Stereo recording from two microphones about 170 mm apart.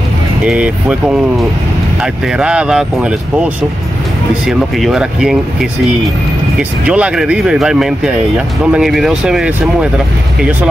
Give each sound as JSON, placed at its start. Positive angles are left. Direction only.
{"t": 0.5, "sound": "speech", "side_deg": -5}
{"t": 2.3, "sound": "speech", "side_deg": -5}
{"t": 4.5, "sound": "speech", "side_deg": 0}
{"t": 6.9, "sound": "speech", "side_deg": -5}